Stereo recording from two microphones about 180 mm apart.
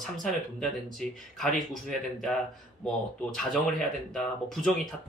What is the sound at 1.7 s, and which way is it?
Speech, centre (ahead or behind).